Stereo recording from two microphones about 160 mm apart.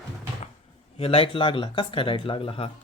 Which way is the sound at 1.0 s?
35° left (ahead or behind).